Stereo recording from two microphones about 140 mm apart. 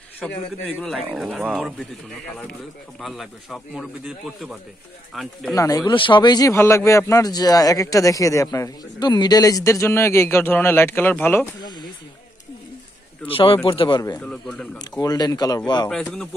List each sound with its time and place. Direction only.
0.2 s speech: 5° left (ahead or behind)
1.8 s a man's voice: 5° left (ahead or behind)
5.5 s a man's voice: 25° left (ahead or behind)
6.5 s a man's voice: 20° left (ahead or behind)
13.3 s speech: 40° left (ahead or behind)
14.2 s a man's voice: 5° left (ahead or behind)
14.8 s a man's voice: 30° left (ahead or behind)
15.9 s speech: 5° left (ahead or behind)